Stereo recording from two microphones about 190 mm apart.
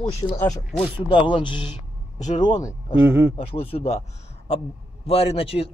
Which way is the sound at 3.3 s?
30° left (ahead or behind).